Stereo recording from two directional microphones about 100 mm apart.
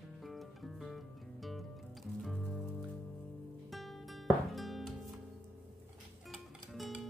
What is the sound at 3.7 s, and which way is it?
Music, centre (ahead or behind).